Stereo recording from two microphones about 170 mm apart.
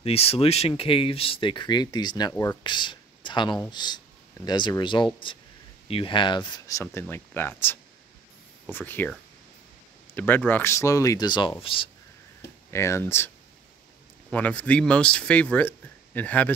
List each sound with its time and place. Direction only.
0.0 s speech: 35° left (ahead or behind)
6.8 s speech: 15° left (ahead or behind)
10.1 s speech: 10° left (ahead or behind); by 11.9 s 30° left (ahead or behind)
12.7 s speech: 15° left (ahead or behind)
14.3 s speech: 10° left (ahead or behind)